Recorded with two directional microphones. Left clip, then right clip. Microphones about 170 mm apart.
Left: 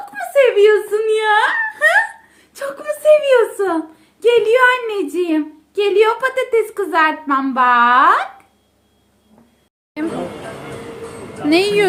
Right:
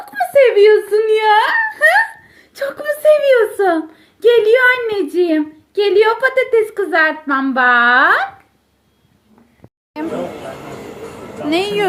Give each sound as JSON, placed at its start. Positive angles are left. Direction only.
{"t": 0.1, "sound": "whimper", "side_deg": -25}
{"t": 2.5, "sound": "speech", "side_deg": -25}
{"t": 11.4, "sound": "a woman's voice", "side_deg": 45}